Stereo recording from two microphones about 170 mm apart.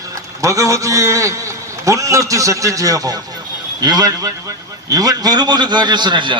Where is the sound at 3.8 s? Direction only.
25° right (ahead or behind).